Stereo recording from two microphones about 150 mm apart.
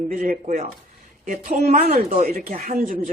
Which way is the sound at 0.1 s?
60° right (ahead or behind).